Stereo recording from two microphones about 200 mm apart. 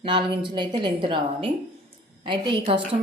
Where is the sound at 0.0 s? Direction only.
25° right (ahead or behind).